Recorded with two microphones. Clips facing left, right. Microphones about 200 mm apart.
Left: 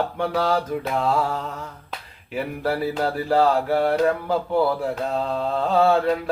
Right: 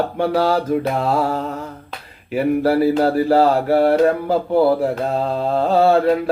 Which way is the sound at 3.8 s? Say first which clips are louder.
Right 6 dB; 50° right (ahead or behind).